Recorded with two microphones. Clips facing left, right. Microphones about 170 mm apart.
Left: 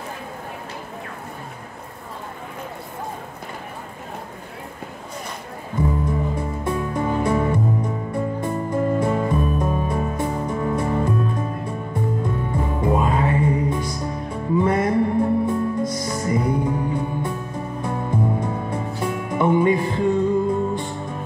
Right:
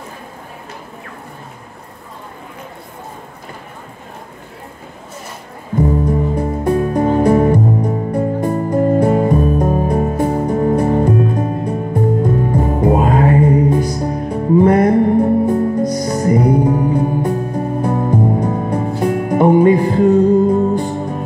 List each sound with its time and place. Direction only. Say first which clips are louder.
5.8 s music: right 7 dB; 35° right (ahead or behind)